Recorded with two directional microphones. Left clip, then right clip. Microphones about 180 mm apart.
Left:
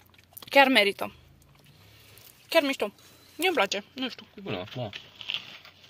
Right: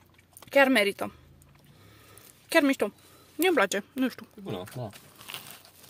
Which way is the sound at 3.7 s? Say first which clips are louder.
Right 2 dB; 55° right (ahead or behind).